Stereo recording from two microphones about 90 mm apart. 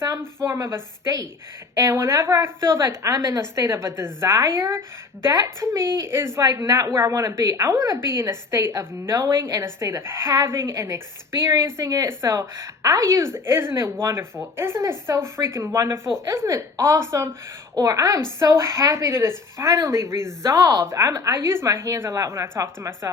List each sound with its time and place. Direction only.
0.0 s a woman's voice: 35° right (ahead or behind)
6.4 s a woman's voice: 40° right (ahead or behind)